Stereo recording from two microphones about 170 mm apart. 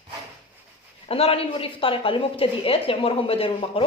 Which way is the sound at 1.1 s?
35° left (ahead or behind).